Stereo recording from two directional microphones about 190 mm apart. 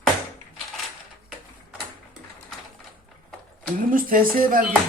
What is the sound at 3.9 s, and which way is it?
Speech, 45° right (ahead or behind).